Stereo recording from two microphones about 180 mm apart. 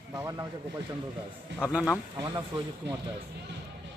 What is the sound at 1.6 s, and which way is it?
Speech, 5° right (ahead or behind).